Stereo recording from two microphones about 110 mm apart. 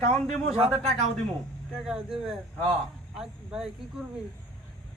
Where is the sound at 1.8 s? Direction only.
5° right (ahead or behind).